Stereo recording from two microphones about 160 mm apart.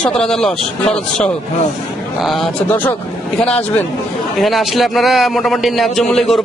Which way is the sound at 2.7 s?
10° left (ahead or behind).